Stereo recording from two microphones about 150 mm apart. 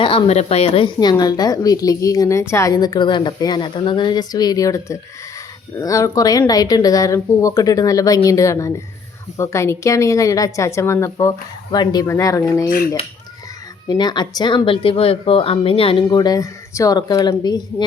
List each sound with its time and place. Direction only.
0.0 s a woman's voice: 35° left (ahead or behind)
13.8 s speech: 30° left (ahead or behind)
16.0 s a woman's voice: 25° left (ahead or behind)